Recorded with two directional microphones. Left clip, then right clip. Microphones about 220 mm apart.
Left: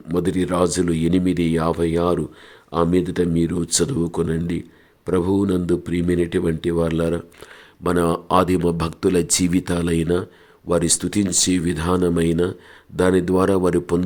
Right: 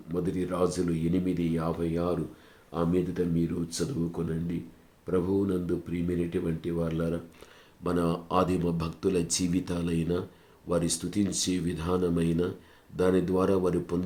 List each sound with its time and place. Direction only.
0.1 s speech: 40° left (ahead or behind)